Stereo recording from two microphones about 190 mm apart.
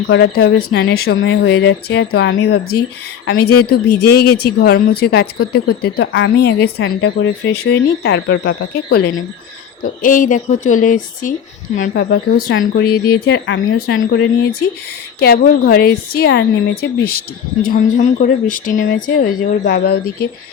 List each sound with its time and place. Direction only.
0.1 s a woman's voice: 55° left (ahead or behind); by 14.3 s 75° left (ahead or behind)
15.2 s a woman's voice: 50° left (ahead or behind)